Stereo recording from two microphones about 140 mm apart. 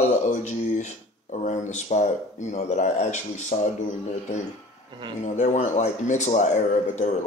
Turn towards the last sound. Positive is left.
turn(degrees=60)  # may be behind; listen again after turning